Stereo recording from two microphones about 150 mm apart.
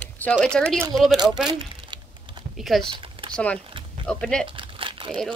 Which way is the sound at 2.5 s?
Centre (ahead or behind).